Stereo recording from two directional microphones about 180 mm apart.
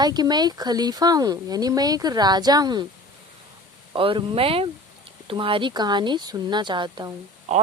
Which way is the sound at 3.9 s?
30° right (ahead or behind).